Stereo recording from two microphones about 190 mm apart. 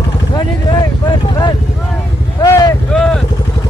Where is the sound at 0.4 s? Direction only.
20° left (ahead or behind).